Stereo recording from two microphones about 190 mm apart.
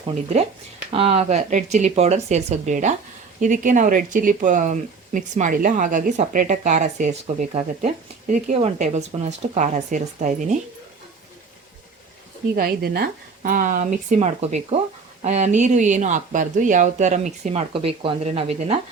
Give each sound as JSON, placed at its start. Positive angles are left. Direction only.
{"t": 0.0, "sound": "speech", "side_deg": -35}
{"t": 12.5, "sound": "speech", "side_deg": -55}